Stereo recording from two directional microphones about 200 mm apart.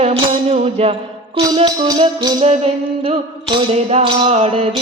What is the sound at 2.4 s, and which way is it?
Music, 30° right (ahead or behind).